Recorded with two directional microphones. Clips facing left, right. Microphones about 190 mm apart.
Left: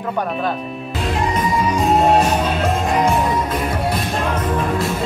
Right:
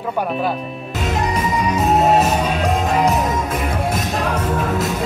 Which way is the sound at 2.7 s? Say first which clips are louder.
Even; centre (ahead or behind).